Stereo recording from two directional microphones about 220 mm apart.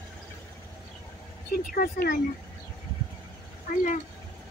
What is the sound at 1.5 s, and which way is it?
Speech, 40° left (ahead or behind).